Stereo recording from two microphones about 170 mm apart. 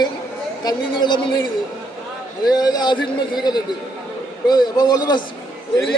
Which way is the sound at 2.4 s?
25° left (ahead or behind).